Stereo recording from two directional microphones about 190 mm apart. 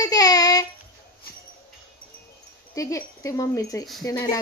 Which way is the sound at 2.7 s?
15° left (ahead or behind).